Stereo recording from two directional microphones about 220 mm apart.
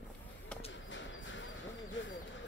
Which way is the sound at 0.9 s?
55° left (ahead or behind).